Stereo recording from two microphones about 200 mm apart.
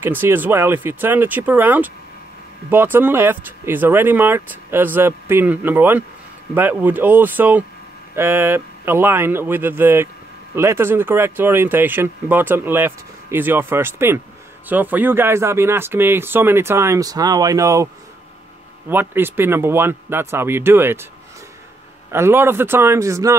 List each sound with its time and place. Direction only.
0.0 s speech: 10° right (ahead or behind)
18.9 s speech: 10° right (ahead or behind)
22.1 s speech: 10° right (ahead or behind)